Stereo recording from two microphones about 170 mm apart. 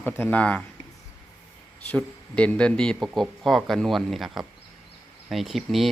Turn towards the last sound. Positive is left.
turn(degrees=0)  # may be behind; listen again after turning